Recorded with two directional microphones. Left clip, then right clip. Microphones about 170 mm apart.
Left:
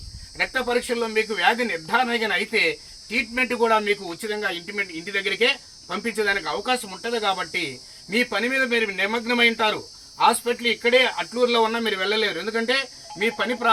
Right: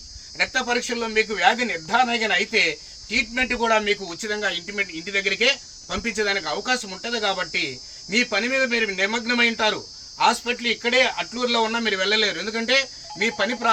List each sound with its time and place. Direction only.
0.3 s speech: 20° right (ahead or behind)